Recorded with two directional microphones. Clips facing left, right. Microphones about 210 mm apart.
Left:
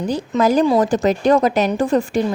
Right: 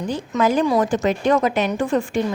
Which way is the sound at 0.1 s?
40° left (ahead or behind).